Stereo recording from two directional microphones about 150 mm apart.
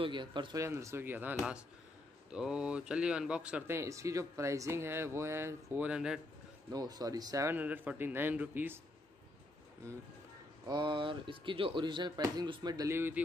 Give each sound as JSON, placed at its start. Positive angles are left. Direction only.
{"t": 0.0, "sound": "speech", "side_deg": -30}
{"t": 0.6, "sound": "speech", "side_deg": -20}
{"t": 6.7, "sound": "speech", "side_deg": -25}
{"t": 10.7, "sound": "speech", "side_deg": -30}